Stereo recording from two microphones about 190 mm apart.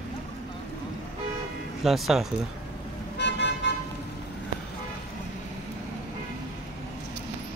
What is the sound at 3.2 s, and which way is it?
Vehicle, 65° left (ahead or behind).